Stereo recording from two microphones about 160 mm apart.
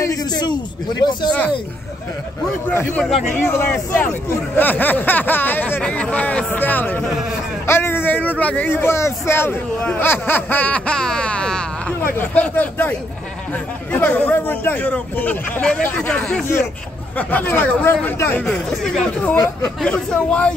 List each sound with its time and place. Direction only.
0.0 s a man's voice: 25° left (ahead or behind)
3.0 s speech: centre (ahead or behind)
3.4 s speech: 10° left (ahead or behind)
13.9 s speech: 10° left (ahead or behind)
19.3 s a man's voice: 20° left (ahead or behind)
19.8 s speech: 5° left (ahead or behind)